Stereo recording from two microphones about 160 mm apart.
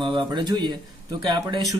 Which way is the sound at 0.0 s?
30° right (ahead or behind).